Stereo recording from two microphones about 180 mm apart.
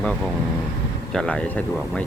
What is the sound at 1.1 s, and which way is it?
Speech, 5° left (ahead or behind).